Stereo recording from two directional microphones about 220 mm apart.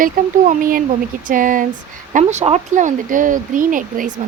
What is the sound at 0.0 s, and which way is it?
A woman's voice, 40° right (ahead or behind).